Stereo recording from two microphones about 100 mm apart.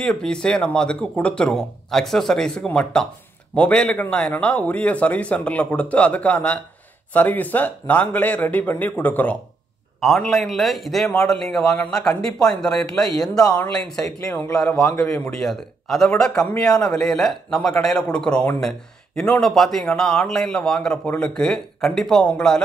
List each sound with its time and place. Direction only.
0.0 s speech: 5° left (ahead or behind)
9.9 s a man's voice: centre (ahead or behind)
14.5 s speech: 10° left (ahead or behind)
15.3 s a man's voice: 5° left (ahead or behind)